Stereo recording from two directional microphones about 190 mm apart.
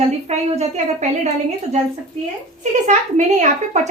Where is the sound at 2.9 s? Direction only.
40° right (ahead or behind).